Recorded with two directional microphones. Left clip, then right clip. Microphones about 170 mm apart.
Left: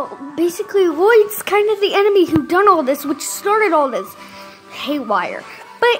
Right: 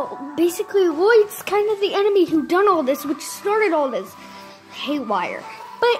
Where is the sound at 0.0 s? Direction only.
5° left (ahead or behind).